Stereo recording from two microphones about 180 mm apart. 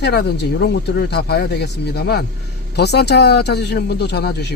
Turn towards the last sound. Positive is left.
turn(degrees=65)  # may be behind; listen again after turning